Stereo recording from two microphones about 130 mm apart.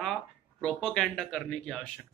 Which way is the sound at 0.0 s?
5° left (ahead or behind).